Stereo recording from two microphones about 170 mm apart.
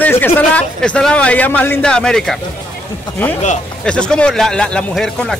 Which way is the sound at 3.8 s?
5° left (ahead or behind).